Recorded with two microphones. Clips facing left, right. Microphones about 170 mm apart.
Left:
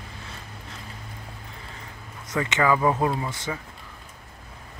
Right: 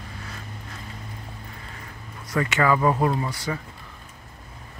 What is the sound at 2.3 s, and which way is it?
Speech, 20° left (ahead or behind).